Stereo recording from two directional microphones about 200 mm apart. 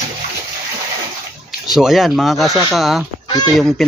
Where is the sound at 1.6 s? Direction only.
Centre (ahead or behind).